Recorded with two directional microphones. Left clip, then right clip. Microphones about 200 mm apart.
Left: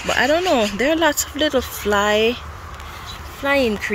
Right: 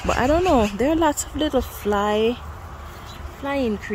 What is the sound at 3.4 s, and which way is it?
Speech, centre (ahead or behind).